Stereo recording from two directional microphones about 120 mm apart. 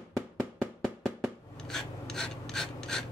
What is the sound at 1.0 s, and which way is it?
Filing, 5° left (ahead or behind).